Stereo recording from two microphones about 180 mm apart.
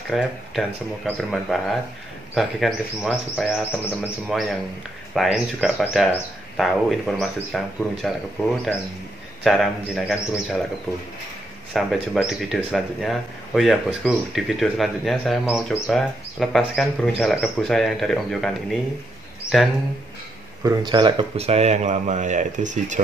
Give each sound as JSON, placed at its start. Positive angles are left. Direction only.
{"t": 0.1, "sound": "speech", "side_deg": 0}
{"t": 9.4, "sound": "speech", "side_deg": 0}
{"t": 11.7, "sound": "speech", "side_deg": 0}
{"t": 20.6, "sound": "speech", "side_deg": -20}